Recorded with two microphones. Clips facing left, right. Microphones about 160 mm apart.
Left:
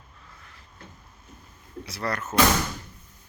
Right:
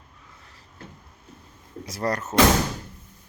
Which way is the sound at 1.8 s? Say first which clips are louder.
Right 4 dB; 40° right (ahead or behind).